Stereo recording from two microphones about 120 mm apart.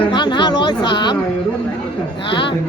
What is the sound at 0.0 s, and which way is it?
Speech, 40° left (ahead or behind).